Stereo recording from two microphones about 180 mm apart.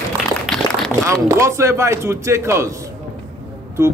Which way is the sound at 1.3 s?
15° right (ahead or behind).